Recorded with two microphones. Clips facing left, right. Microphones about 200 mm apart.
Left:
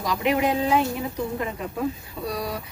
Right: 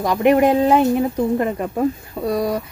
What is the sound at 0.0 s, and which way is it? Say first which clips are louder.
Speech: right 8 dB; 55° right (ahead or behind).